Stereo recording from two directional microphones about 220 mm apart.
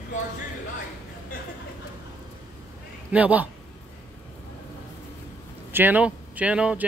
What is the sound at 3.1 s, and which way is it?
Speech, 5° right (ahead or behind).